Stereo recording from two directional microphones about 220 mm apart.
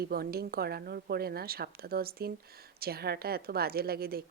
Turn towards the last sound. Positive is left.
turn(degrees=-45)  # may be behind; listen again after turning